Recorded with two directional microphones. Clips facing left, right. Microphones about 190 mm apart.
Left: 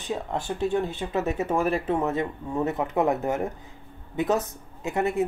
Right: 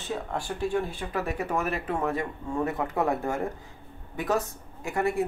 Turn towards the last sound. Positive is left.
turn(degrees=20)  # may be behind; listen again after turning